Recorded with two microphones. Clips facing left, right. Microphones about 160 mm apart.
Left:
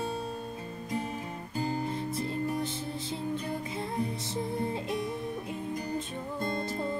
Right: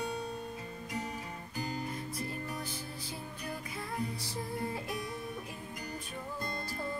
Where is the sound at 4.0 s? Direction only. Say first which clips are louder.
Left 5 dB; 25° left (ahead or behind).